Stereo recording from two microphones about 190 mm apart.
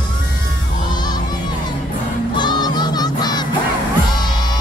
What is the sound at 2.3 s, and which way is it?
Music, 25° left (ahead or behind).